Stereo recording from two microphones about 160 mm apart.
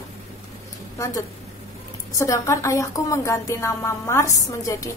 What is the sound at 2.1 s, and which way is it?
A woman's voice, 20° left (ahead or behind).